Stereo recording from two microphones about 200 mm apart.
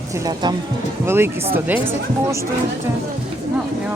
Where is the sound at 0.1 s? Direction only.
20° right (ahead or behind).